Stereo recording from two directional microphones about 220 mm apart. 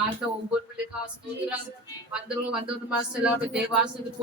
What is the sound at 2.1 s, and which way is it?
Speech, 5° right (ahead or behind).